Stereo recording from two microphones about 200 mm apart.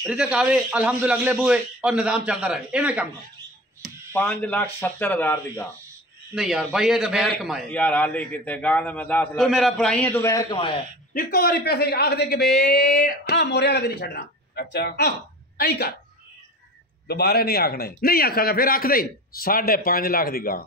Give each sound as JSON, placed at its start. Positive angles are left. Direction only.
{"t": 0.0, "sound": "a man's voice", "side_deg": -5}
{"t": 3.8, "sound": "speech", "side_deg": 10}
{"t": 6.3, "sound": "a man's voice", "side_deg": 0}
{"t": 11.1, "sound": "a man's voice", "side_deg": 50}
{"t": 17.1, "sound": "a man's voice", "side_deg": 50}